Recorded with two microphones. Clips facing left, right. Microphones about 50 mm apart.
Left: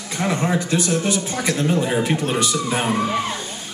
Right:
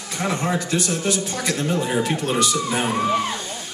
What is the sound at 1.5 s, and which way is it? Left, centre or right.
A woman's voice, centre.